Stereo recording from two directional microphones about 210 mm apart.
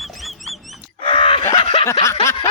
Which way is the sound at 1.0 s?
25° left (ahead or behind).